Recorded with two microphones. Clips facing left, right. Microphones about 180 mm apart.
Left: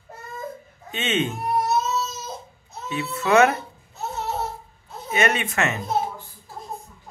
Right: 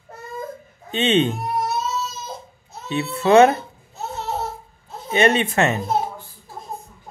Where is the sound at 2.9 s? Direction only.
30° right (ahead or behind).